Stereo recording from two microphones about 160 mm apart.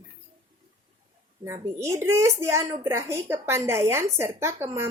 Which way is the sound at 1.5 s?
20° right (ahead or behind).